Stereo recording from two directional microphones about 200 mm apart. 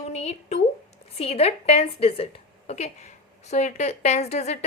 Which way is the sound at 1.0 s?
30° left (ahead or behind).